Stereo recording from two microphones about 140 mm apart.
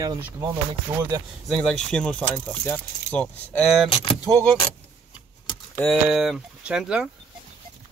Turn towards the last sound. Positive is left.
turn(degrees=-5)  # may be behind; listen again after turning